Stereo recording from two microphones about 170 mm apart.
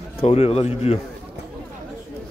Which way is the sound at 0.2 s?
35° left (ahead or behind).